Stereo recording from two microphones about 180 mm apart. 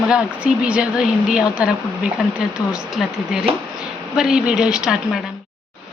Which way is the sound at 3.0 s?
Centre (ahead or behind).